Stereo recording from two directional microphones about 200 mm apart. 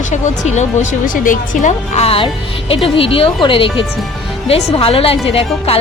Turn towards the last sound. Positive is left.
turn(degrees=30)  # may be behind; listen again after turning